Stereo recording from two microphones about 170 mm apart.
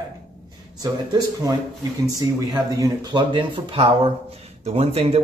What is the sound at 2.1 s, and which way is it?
A man's voice, 20° right (ahead or behind).